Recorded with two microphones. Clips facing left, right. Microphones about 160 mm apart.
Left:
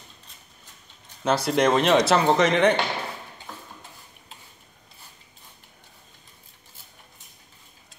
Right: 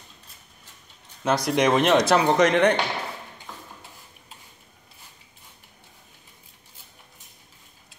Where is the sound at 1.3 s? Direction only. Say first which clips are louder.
Even; 5° left (ahead or behind).